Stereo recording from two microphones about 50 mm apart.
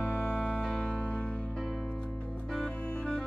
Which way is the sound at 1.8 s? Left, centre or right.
Left.